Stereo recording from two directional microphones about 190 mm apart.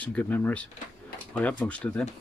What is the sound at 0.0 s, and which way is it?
Speech, 5° left (ahead or behind).